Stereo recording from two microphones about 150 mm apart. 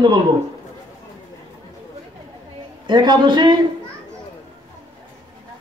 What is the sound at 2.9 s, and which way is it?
Speech, 30° right (ahead or behind).